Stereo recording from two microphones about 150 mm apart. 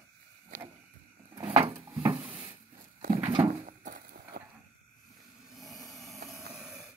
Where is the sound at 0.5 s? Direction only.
55° right (ahead or behind).